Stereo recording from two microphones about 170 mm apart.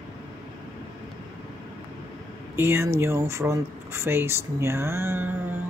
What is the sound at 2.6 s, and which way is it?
Speech, 15° right (ahead or behind).